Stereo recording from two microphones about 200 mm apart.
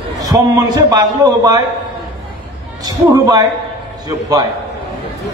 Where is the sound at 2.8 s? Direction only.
20° right (ahead or behind).